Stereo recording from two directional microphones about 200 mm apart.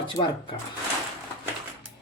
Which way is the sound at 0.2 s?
25° left (ahead or behind).